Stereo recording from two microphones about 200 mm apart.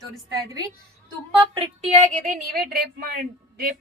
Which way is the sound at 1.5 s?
30° right (ahead or behind).